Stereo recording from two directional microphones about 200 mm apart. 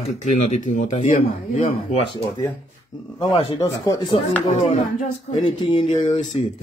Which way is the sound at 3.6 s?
15° left (ahead or behind).